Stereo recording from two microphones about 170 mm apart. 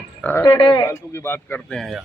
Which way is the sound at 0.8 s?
15° left (ahead or behind).